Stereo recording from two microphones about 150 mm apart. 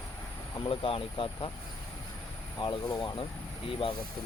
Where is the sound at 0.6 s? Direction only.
35° left (ahead or behind).